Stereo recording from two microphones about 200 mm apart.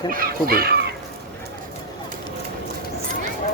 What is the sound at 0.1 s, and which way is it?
Speech, 45° right (ahead or behind).